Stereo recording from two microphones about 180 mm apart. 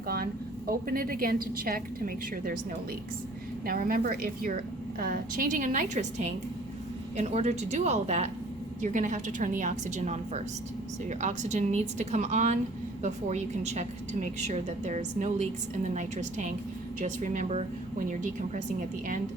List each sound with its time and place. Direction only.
0.7 s a woman's voice: 55° right (ahead or behind)
3.7 s a woman's voice: 55° right (ahead or behind)